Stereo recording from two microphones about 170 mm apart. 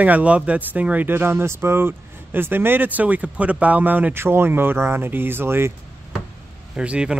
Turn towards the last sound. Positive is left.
turn(degrees=-5)  # may be behind; listen again after turning